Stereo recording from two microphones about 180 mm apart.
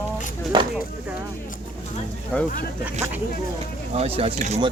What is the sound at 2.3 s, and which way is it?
Speech, 5° left (ahead or behind).